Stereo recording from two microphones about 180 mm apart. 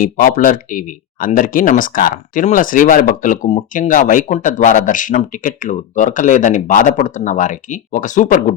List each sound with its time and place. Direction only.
0.0 s speech: 50° left (ahead or behind)